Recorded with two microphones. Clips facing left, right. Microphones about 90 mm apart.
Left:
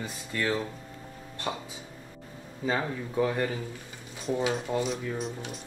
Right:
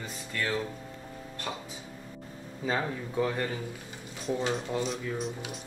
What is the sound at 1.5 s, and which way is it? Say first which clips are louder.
Speech: left 4 dB; 20° left (ahead or behind).